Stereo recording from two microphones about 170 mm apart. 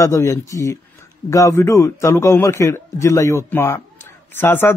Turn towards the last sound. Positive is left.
turn(degrees=15)  # may be behind; listen again after turning